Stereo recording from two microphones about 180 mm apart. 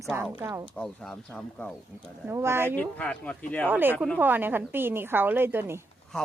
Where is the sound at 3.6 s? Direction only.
10° right (ahead or behind).